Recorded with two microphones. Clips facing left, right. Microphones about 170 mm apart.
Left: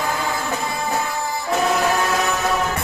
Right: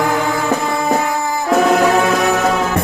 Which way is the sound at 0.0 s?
70° right (ahead or behind).